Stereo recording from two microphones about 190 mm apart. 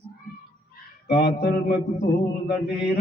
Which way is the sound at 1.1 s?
60° left (ahead or behind).